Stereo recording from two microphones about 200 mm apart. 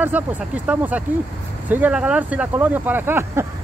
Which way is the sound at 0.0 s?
10° right (ahead or behind).